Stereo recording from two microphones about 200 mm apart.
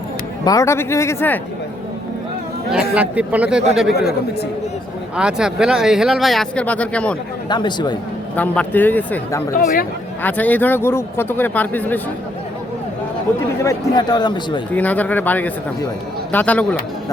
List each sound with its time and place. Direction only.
0.4 s a man's voice: 15° left (ahead or behind)
2.9 s speech: 5° right (ahead or behind)
3.9 s speech: 50° left (ahead or behind)
5.1 s speech: 5° right (ahead or behind)
7.5 s speech: 20° left (ahead or behind)
8.4 s a man's voice: 10° left (ahead or behind)
9.6 s speech: 45° left (ahead or behind)
10.2 s a man's voice: 10° left (ahead or behind)
13.6 s speech: 15° left (ahead or behind)
14.7 s a man's voice: 10° left (ahead or behind)